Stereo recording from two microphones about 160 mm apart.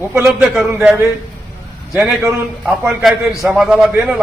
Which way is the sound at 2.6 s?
Centre (ahead or behind).